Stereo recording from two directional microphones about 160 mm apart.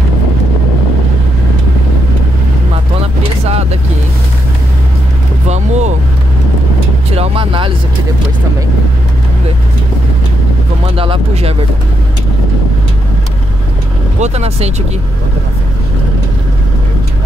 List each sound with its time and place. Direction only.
5.5 s vehicle: 45° right (ahead or behind)
7.2 s vehicle: 35° right (ahead or behind)
11.0 s a sound: 35° right (ahead or behind)
14.2 s vehicle: 40° right (ahead or behind)